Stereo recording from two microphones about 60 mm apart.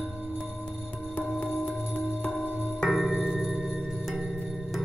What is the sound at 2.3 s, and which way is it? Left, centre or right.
Music, left.